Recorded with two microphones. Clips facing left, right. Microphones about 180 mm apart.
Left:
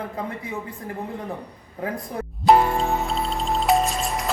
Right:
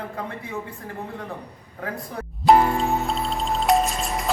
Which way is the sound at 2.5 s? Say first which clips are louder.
Even; centre (ahead or behind).